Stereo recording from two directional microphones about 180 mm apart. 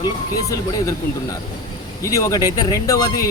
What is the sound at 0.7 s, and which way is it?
Speech, 20° left (ahead or behind).